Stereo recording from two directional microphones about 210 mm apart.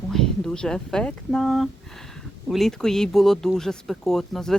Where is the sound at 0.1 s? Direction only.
Centre (ahead or behind).